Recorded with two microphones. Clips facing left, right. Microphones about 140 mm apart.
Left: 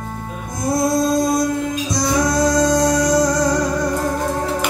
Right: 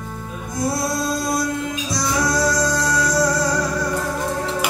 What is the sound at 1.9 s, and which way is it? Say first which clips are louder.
Music: left 3 dB; 20° left (ahead or behind).